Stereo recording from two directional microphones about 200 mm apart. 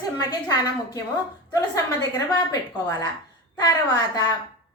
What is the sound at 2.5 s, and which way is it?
A woman's voice, 15° left (ahead or behind).